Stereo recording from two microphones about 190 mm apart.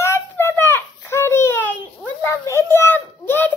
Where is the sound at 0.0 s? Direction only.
15° left (ahead or behind).